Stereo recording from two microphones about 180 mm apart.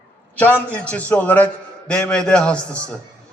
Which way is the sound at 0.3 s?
10° left (ahead or behind).